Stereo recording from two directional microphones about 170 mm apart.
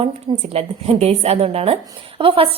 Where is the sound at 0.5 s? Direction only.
35° right (ahead or behind).